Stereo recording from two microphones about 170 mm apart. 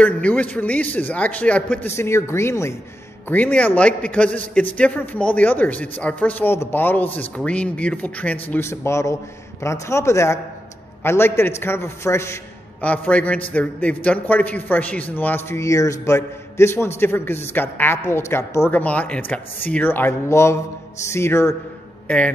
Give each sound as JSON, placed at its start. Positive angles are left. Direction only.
{"t": 0.0, "sound": "a man's voice", "side_deg": 10}